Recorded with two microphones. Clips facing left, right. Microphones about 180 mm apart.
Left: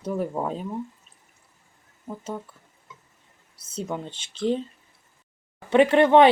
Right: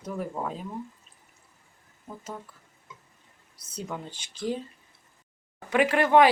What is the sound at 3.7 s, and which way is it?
Speech, 20° left (ahead or behind).